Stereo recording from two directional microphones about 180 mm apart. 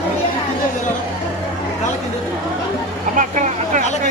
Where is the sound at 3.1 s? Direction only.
45° right (ahead or behind).